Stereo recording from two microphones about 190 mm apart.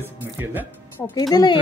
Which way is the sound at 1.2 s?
20° left (ahead or behind).